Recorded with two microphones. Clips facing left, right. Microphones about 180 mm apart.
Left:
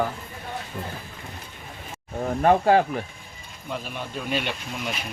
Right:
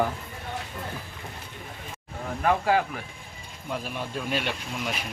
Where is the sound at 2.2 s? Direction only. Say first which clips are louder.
Left 5 dB; 35° left (ahead or behind).